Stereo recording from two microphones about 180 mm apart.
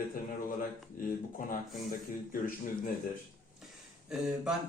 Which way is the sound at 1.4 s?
50° left (ahead or behind).